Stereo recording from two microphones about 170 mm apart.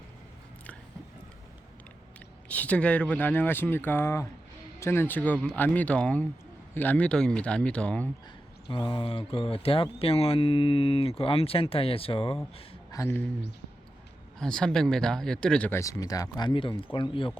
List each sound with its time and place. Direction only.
2.5 s speech: 10° left (ahead or behind)
8.7 s speech: 30° left (ahead or behind)
12.9 s speech: 15° left (ahead or behind)
14.3 s speech: 5° left (ahead or behind); by 17.3 s 30° left (ahead or behind)